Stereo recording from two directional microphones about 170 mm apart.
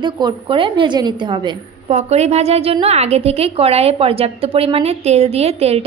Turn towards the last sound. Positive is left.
turn(degrees=-35)  # may be behind; listen again after turning